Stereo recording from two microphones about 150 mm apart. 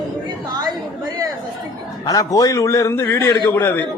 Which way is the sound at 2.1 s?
25° left (ahead or behind).